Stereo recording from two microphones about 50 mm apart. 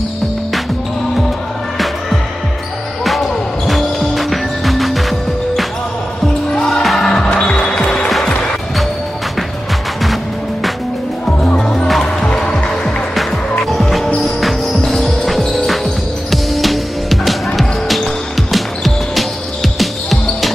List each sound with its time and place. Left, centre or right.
3.0 s music: centre
6.5 s music: centre
6.8 s music: centre
7.1 s music: centre
11.2 s music: centre
12.8 s music: centre